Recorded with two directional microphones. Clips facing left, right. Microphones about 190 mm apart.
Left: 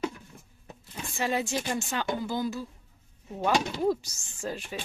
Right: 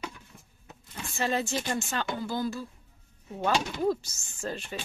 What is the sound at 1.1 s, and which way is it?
Speech, 10° left (ahead or behind).